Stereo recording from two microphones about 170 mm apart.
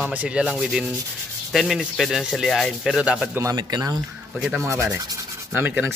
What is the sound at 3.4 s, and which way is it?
A man's voice, 20° right (ahead or behind).